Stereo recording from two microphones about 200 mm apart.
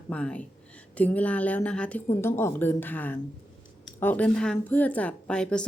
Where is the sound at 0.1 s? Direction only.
5° left (ahead or behind).